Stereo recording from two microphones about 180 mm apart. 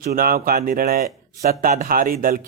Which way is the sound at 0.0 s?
55° right (ahead or behind).